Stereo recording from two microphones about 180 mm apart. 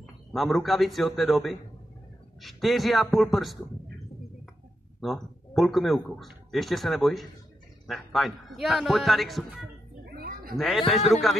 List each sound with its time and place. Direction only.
0.0 s speech: centre (ahead or behind)
5.0 s speech: centre (ahead or behind)
10.0 s a sound: 60° right (ahead or behind)
10.9 s speech: centre (ahead or behind)